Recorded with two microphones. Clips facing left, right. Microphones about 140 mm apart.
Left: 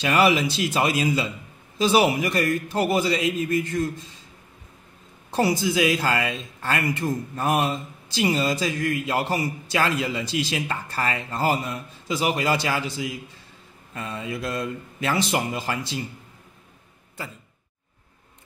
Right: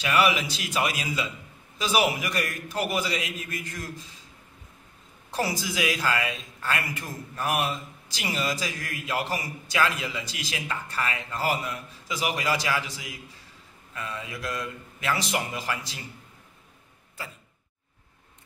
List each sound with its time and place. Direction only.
0.0 s a man's voice: 35° left (ahead or behind)
5.3 s a man's voice: 25° left (ahead or behind)
13.9 s a man's voice: 30° left (ahead or behind)